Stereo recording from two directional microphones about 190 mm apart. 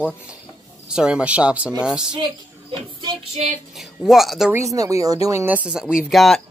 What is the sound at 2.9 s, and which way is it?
Child singing, 35° right (ahead or behind).